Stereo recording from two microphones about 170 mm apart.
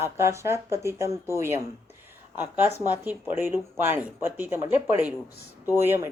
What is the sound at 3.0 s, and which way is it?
Speech, 10° right (ahead or behind).